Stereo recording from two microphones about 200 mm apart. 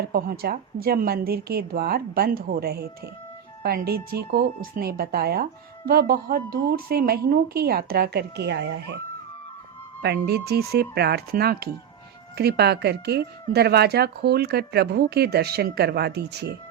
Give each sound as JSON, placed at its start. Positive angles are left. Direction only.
{"t": 0.1, "sound": "speech", "side_deg": -50}
{"t": 10.0, "sound": "speech", "side_deg": -55}